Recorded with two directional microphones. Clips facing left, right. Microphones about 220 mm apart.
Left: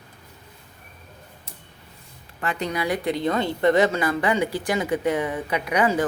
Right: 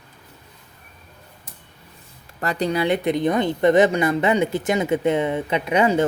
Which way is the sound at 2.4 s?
35° right (ahead or behind).